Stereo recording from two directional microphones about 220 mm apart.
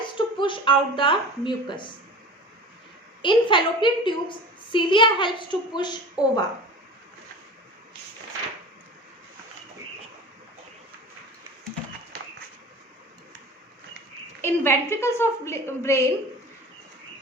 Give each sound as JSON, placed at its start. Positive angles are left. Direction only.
{"t": 0.2, "sound": "a woman's voice", "side_deg": 20}
{"t": 3.2, "sound": "a woman's voice", "side_deg": 20}
{"t": 14.4, "sound": "a woman's voice", "side_deg": 10}